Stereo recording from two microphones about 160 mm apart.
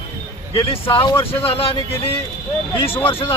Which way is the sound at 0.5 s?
35° left (ahead or behind).